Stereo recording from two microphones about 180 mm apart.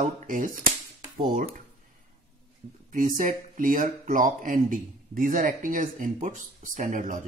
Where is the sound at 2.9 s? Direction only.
45° right (ahead or behind).